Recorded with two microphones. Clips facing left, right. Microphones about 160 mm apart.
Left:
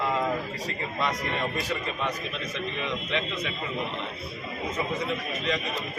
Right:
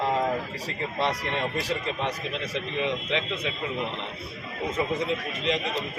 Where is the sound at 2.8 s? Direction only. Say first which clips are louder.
Right 4 dB; 25° right (ahead or behind).